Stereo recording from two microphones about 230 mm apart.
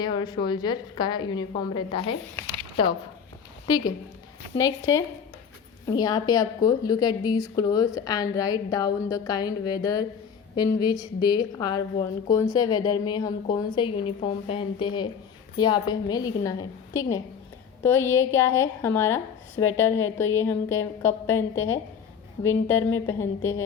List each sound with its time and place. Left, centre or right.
0.0 s a woman's voice: centre